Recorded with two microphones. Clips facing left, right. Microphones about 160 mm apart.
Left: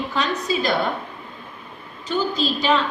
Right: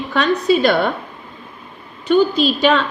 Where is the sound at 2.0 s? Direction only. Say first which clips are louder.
Right 8 dB; 65° right (ahead or behind).